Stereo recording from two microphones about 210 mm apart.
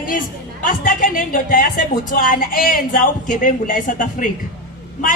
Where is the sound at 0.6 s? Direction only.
40° left (ahead or behind).